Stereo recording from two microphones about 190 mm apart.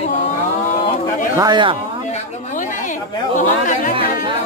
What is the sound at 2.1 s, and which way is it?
Speech, 40° left (ahead or behind).